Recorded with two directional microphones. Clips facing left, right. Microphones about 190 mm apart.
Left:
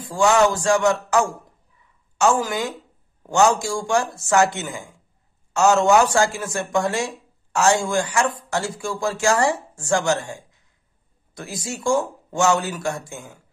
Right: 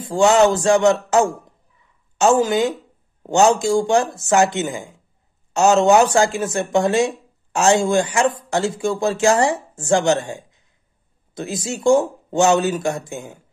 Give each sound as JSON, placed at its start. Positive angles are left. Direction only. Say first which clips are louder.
{"t": 0.0, "sound": "speech", "louder": "right 3 dB", "side_deg": -25}